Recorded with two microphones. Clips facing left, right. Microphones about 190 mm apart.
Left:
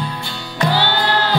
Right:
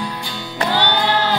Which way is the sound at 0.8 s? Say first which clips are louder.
Right 3 dB; 20° right (ahead or behind).